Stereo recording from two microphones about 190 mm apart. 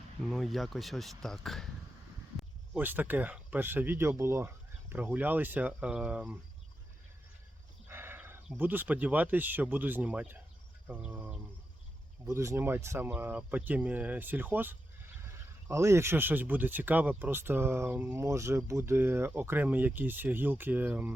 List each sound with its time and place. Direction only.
0.3 s speech: centre (ahead or behind)
2.7 s speech: 10° right (ahead or behind)
7.9 s speech: 10° right (ahead or behind)